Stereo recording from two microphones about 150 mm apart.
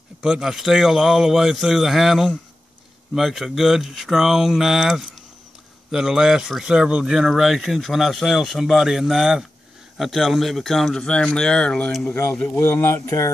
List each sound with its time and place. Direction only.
0.2 s speech: 5° right (ahead or behind); by 13.3 s 20° left (ahead or behind)